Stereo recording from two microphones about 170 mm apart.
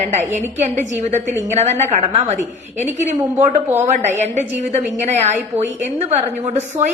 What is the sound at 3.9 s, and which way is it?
A woman's voice, 45° right (ahead or behind).